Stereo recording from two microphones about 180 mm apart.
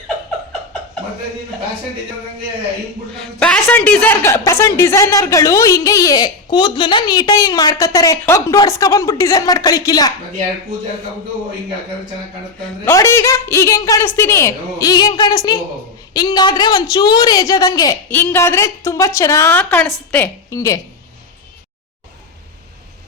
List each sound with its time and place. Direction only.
3.4 s a woman's voice: 5° left (ahead or behind)
12.8 s a woman's voice: 15° left (ahead or behind)